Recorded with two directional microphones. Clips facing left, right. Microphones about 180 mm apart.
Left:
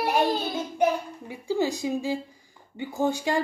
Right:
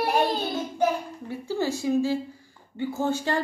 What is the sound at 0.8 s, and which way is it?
A child's voice, 15° left (ahead or behind).